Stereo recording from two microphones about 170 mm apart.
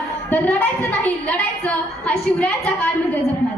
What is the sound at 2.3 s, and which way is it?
Speech, 10° left (ahead or behind).